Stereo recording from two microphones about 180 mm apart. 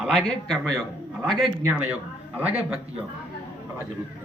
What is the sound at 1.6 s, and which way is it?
Speech, 10° right (ahead or behind).